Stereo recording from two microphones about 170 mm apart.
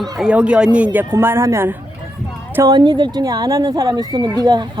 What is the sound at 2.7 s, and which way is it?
Speech, 25° right (ahead or behind).